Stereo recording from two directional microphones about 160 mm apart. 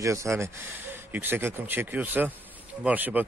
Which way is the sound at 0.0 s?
20° right (ahead or behind).